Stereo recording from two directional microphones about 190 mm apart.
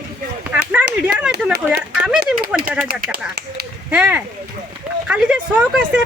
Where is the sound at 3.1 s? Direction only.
55° right (ahead or behind).